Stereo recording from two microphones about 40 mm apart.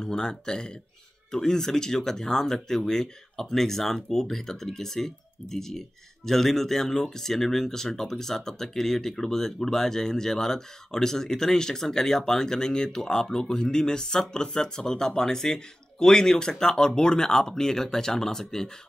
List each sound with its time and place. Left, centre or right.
0.0 s speech: centre